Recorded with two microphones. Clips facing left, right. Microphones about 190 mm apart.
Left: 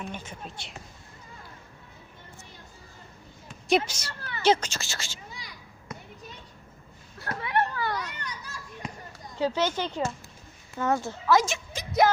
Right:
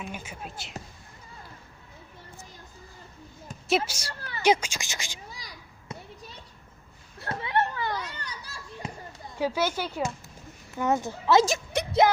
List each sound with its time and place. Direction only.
0.0 s speech: 10° right (ahead or behind)
3.7 s a woman's voice: 5° right (ahead or behind)
5.9 s a sound: 30° right (ahead or behind)
7.2 s children playing: 25° right (ahead or behind)
9.4 s speech: 10° right (ahead or behind); by 11.5 s 25° right (ahead or behind)
11.7 s music: 70° right (ahead or behind)